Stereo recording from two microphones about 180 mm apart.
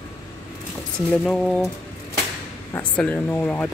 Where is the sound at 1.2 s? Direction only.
Centre (ahead or behind).